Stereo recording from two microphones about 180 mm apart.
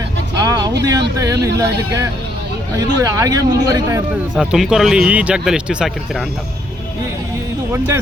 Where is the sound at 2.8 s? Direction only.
20° right (ahead or behind).